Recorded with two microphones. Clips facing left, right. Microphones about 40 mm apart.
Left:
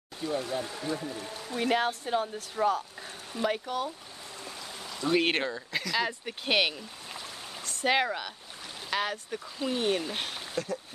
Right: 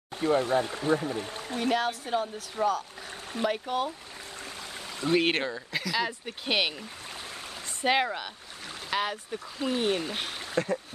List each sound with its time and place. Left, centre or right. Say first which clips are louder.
0.2 s speech: right 7 dB; right
1.6 s speech: even; centre
3.6 s speech: right 3 dB; right
5.1 s speech: right 1 dB; centre
7.8 s speech: right 1 dB; centre
10.5 s speech: right 6 dB; right